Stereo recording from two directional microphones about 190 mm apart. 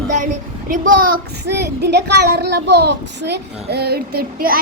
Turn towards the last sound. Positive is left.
turn(degrees=-50)  # may be behind; listen again after turning